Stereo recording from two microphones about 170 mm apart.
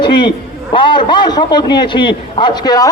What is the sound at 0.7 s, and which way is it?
A man's voice, 30° left (ahead or behind).